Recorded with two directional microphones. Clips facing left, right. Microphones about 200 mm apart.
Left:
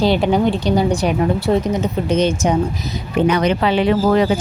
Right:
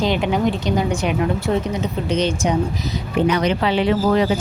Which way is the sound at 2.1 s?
45° left (ahead or behind).